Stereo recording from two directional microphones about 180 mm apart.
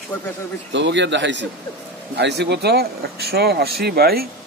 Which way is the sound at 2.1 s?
65° right (ahead or behind).